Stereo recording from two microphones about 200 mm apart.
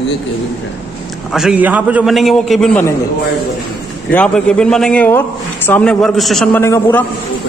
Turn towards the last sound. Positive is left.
turn(degrees=10)  # may be behind; listen again after turning